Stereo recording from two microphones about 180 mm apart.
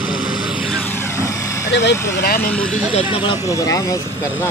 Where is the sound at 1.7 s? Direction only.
70° left (ahead or behind).